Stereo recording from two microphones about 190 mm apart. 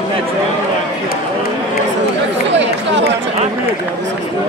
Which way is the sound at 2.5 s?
70° right (ahead or behind).